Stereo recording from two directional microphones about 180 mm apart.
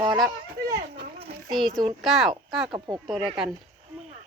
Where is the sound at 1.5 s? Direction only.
Centre (ahead or behind).